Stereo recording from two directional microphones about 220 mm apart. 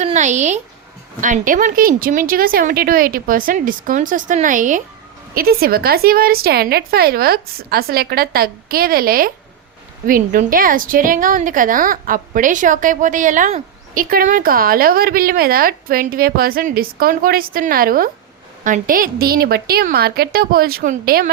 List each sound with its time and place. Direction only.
0.0 s a woman's voice: 35° right (ahead or behind)